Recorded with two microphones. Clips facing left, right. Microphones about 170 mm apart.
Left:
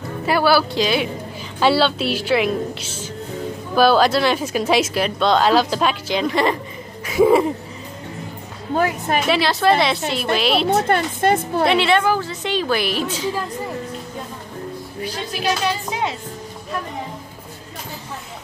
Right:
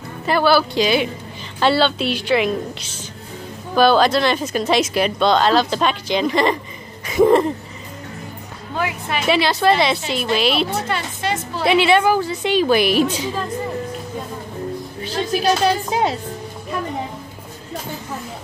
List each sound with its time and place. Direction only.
0.3 s a woman's voice: 5° left (ahead or behind)
7.1 s a sound: 5° left (ahead or behind)
8.7 s a woman's voice: 45° left (ahead or behind)
9.3 s a woman's voice: centre (ahead or behind)
10.7 s a woman's voice: 50° left (ahead or behind)
11.7 s a woman's voice: 5° right (ahead or behind)
15.4 s speech: 40° right (ahead or behind)